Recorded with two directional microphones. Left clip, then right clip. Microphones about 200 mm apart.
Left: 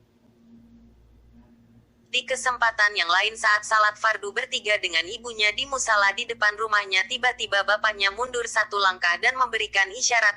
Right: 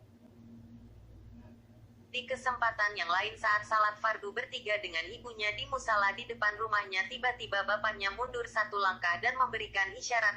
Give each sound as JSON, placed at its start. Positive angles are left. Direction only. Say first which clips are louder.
{"t": 2.0, "sound": "a woman's voice", "louder": "left 10 dB", "side_deg": 40}